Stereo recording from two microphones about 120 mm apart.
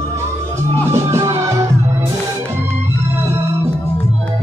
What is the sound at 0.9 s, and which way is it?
Music, 25° right (ahead or behind).